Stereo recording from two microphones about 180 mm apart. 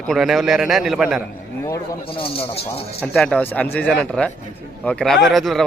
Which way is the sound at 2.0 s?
30° left (ahead or behind).